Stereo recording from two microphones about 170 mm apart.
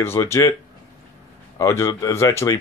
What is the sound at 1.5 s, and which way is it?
Speech, 20° left (ahead or behind).